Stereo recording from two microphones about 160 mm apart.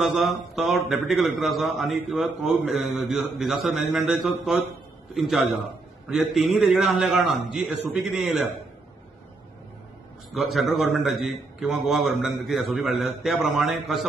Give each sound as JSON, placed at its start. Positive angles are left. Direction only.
{"t": 0.0, "sound": "a man's voice", "side_deg": 0}
{"t": 10.3, "sound": "a man's voice", "side_deg": 0}